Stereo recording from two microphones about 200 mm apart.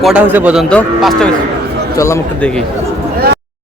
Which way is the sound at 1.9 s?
15° left (ahead or behind).